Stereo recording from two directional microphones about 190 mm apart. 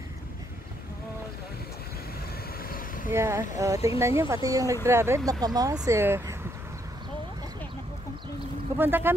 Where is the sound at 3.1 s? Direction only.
15° right (ahead or behind).